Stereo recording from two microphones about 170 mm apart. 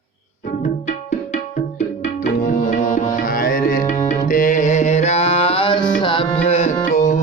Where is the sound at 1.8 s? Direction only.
55° left (ahead or behind).